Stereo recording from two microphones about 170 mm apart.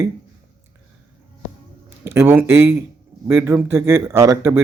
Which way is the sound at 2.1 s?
15° right (ahead or behind).